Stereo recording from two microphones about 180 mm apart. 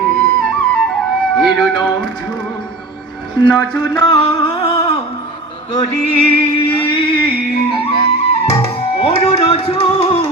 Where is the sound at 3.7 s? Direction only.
10° left (ahead or behind).